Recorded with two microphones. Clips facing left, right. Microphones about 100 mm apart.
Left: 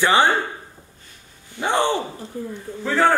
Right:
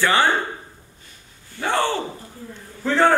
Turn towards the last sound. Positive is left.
turn(degrees=5)  # may be behind; listen again after turning